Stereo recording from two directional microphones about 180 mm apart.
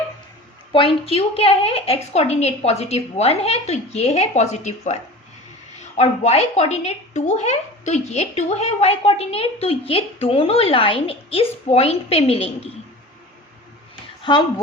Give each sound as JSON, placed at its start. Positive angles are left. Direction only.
{"t": 0.7, "sound": "speech", "side_deg": 30}
{"t": 6.0, "sound": "speech", "side_deg": 35}
{"t": 13.9, "sound": "a sound", "side_deg": 25}